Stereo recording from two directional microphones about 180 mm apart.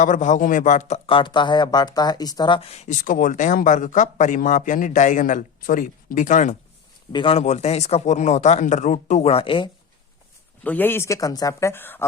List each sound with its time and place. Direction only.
0.0 s speech: 45° left (ahead or behind)
7.1 s speech: 30° left (ahead or behind)
10.6 s speech: 10° left (ahead or behind)